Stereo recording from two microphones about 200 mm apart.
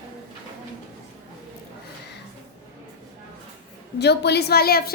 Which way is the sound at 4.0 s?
55° left (ahead or behind).